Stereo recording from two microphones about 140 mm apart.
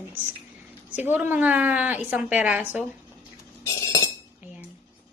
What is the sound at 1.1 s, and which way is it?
A woman's voice, 10° right (ahead or behind).